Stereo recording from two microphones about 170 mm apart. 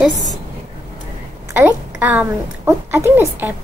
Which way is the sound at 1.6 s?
10° right (ahead or behind).